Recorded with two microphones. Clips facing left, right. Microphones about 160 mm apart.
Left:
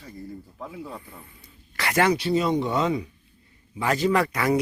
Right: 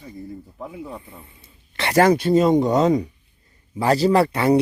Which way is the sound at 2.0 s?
50° right (ahead or behind).